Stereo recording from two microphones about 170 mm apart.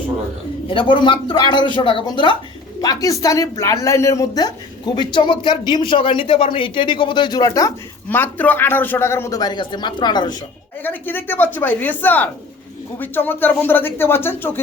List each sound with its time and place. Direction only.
0.7 s a man's voice: 30° left (ahead or behind)
8.1 s a man's voice: 10° left (ahead or behind)
10.8 s a man's voice: 10° left (ahead or behind)